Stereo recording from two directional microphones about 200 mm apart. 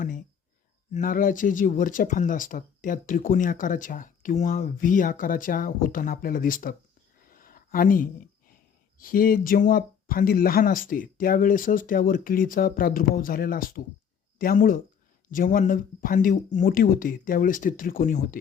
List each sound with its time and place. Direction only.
0.0 s speech: 40° left (ahead or behind)
7.3 s a sound: 45° left (ahead or behind)
9.0 s speech: 45° left (ahead or behind)